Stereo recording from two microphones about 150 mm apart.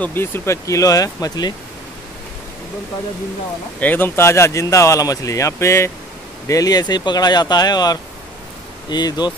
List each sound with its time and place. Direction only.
0.0 s speech: 15° left (ahead or behind)
3.8 s speech: 15° left (ahead or behind); by 9.3 s 30° left (ahead or behind)